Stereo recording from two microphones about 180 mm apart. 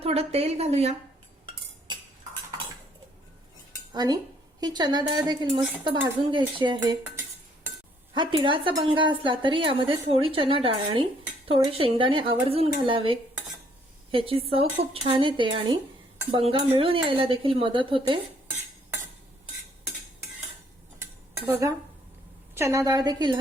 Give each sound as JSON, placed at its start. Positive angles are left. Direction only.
{"t": 0.0, "sound": "a woman's voice", "side_deg": -35}
{"t": 3.9, "sound": "a woman's voice", "side_deg": -25}
{"t": 7.0, "sound": "cutlery", "side_deg": -10}
{"t": 8.1, "sound": "a woman's voice", "side_deg": -25}
{"t": 21.4, "sound": "dishes", "side_deg": -15}
{"t": 22.5, "sound": "a woman's voice", "side_deg": -15}